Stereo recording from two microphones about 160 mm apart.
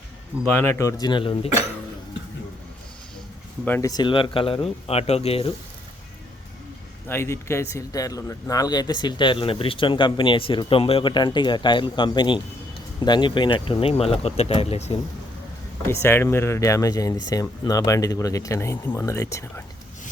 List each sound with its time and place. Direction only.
0.4 s speech: 15° left (ahead or behind); by 1.5 s 35° left (ahead or behind)
3.7 s speech: 20° left (ahead or behind); by 5.5 s 40° left (ahead or behind)
7.1 s speech: 15° left (ahead or behind); by 14.9 s 40° left (ahead or behind)
15.9 s speech: 15° left (ahead or behind)